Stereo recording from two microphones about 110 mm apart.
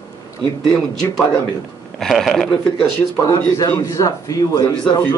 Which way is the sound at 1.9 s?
Centre (ahead or behind).